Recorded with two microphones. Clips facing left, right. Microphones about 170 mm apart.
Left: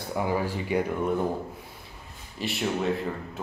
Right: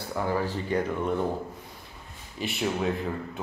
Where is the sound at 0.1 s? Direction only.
15° left (ahead or behind).